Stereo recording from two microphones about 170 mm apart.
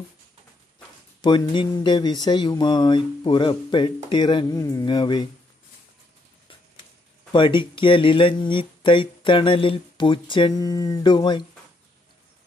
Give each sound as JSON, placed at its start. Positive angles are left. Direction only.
{"t": 1.2, "sound": "speech", "side_deg": 25}
{"t": 7.3, "sound": "speech", "side_deg": 30}